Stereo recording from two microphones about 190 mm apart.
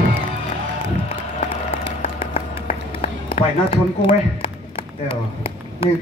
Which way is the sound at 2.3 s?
40° left (ahead or behind).